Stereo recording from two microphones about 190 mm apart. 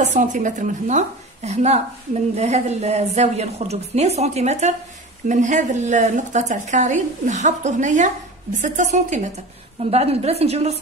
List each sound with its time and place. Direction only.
0.0 s a woman's voice: 40° right (ahead or behind)